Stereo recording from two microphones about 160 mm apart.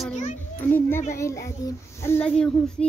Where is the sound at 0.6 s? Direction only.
15° left (ahead or behind).